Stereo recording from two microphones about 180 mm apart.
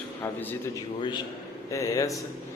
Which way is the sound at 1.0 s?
25° left (ahead or behind).